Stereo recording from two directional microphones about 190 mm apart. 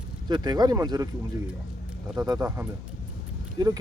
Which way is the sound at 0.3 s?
20° right (ahead or behind).